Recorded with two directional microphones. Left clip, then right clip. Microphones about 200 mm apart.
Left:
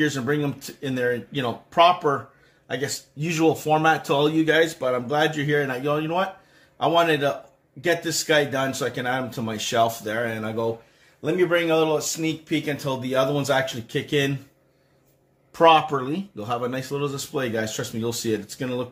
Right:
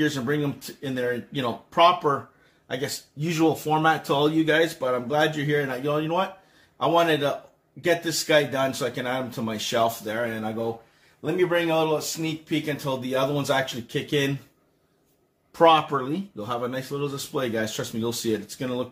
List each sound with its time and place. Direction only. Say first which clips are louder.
0.0 s speech: left 2 dB; 25° left (ahead or behind)
15.5 s speech: left 2 dB; 20° left (ahead or behind)